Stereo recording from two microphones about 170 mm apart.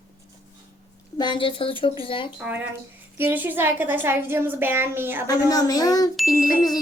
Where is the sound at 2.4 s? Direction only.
10° right (ahead or behind).